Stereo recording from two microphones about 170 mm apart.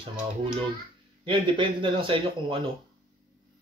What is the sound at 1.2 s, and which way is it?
Speech, 30° right (ahead or behind).